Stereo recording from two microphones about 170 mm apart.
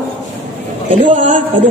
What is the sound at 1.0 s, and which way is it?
Speech, 30° right (ahead or behind).